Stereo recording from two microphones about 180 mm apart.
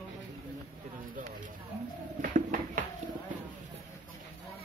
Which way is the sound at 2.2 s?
50° right (ahead or behind).